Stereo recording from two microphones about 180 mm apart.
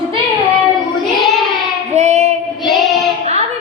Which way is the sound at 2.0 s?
40° right (ahead or behind).